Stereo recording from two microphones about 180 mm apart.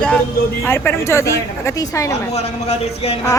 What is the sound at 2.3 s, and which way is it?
Speech, 35° left (ahead or behind).